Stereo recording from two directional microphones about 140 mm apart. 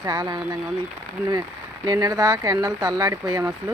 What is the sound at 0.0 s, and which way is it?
Speech, 30° right (ahead or behind).